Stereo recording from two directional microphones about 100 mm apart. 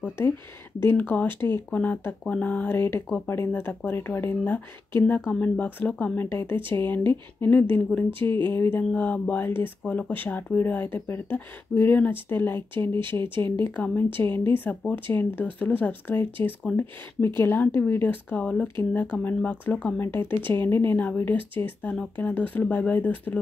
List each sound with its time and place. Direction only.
0.8 s speech: 20° left (ahead or behind)